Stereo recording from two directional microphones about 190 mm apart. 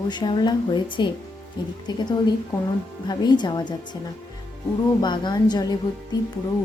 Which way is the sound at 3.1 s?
25° left (ahead or behind).